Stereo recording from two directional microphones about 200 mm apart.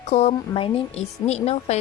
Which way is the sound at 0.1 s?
30° left (ahead or behind).